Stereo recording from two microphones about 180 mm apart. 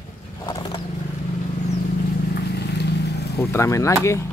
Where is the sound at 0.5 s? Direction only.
20° left (ahead or behind).